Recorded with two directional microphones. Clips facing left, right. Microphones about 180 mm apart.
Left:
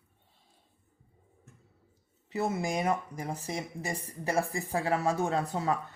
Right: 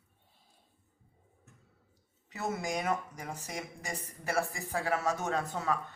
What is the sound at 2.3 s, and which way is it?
Speech, 30° left (ahead or behind).